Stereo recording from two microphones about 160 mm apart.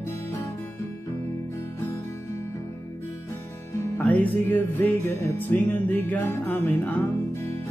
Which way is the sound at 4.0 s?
10° left (ahead or behind).